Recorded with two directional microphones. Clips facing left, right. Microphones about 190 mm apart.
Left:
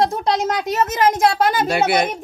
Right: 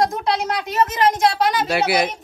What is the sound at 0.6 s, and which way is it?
Speech, 45° left (ahead or behind).